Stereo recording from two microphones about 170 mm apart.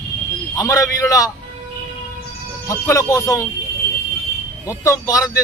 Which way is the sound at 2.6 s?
20° left (ahead or behind).